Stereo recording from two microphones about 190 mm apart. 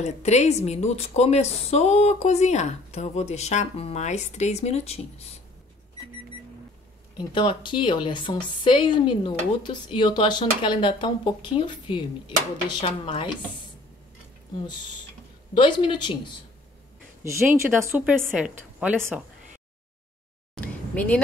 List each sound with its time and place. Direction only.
0.0 s speech: 35° left (ahead or behind)
7.3 s a woman's voice: 25° left (ahead or behind)
15.5 s a woman's voice: 25° left (ahead or behind)
17.6 s a woman's voice: 10° right (ahead or behind)
20.6 s a sound: 5° left (ahead or behind)